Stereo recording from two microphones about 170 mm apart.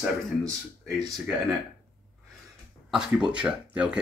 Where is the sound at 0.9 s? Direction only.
25° right (ahead or behind).